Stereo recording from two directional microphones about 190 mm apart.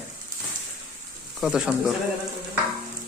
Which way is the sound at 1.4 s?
Centre (ahead or behind).